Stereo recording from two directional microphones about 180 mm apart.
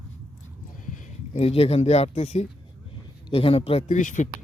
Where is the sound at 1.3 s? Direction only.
35° left (ahead or behind).